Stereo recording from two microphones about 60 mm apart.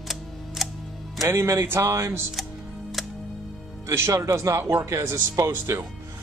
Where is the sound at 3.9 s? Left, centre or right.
Right.